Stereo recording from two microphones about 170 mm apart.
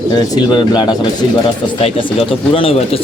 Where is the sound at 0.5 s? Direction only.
25° left (ahead or behind).